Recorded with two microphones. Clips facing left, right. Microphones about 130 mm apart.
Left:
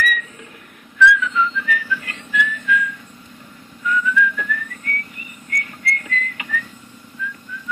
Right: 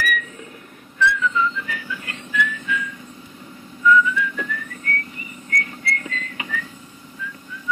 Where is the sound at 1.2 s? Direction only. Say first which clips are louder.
Left 1 dB; 25° right (ahead or behind).